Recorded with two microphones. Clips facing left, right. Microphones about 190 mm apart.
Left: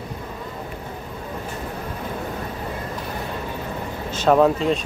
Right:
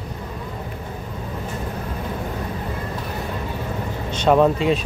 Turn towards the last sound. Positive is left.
turn(degrees=0)  # may be behind; listen again after turning